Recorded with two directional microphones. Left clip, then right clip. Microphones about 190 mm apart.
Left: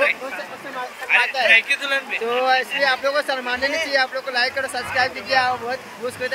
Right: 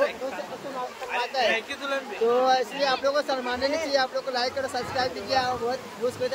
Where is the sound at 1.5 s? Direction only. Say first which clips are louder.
Left 11 dB; 35° right (ahead or behind).